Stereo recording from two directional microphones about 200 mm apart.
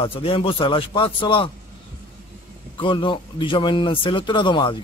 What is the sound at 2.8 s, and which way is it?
A man's voice, 25° left (ahead or behind).